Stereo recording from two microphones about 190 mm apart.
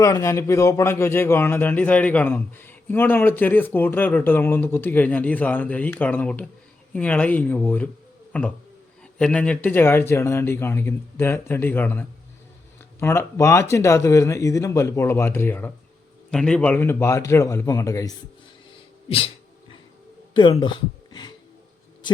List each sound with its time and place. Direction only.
0.0 s a man's voice: 15° left (ahead or behind)
8.3 s a sound: 5° left (ahead or behind)
9.1 s a man's voice: 5° left (ahead or behind)
19.0 s cat: 30° left (ahead or behind)
20.3 s speech: 25° left (ahead or behind)